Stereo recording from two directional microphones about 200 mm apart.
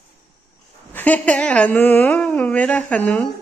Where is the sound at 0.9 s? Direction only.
10° left (ahead or behind).